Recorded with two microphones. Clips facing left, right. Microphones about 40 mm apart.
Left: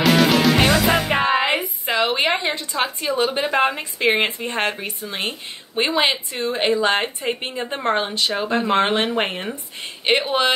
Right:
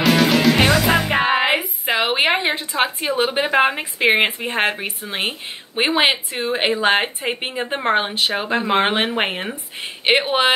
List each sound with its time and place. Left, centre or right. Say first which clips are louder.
0.0 s music: even; centre
1.2 s music: right 1 dB; centre
1.9 s a woman's voice: right 2 dB; right